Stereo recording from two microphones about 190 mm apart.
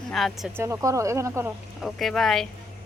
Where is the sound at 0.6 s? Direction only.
15° right (ahead or behind).